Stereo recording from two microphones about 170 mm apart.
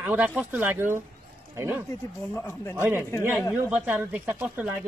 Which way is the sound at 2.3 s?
15° left (ahead or behind).